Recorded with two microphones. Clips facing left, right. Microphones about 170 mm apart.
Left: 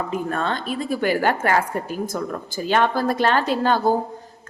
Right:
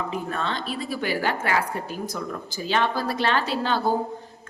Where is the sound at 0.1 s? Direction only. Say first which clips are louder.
Left 4 dB; 50° left (ahead or behind).